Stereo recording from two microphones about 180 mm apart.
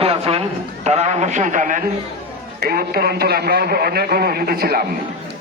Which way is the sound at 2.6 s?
55° right (ahead or behind).